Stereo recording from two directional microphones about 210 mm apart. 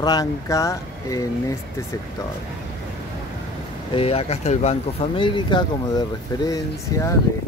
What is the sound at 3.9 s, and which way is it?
Speech, 25° left (ahead or behind).